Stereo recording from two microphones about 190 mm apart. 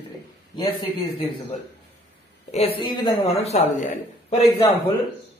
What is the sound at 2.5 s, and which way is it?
A woman's voice, 30° left (ahead or behind).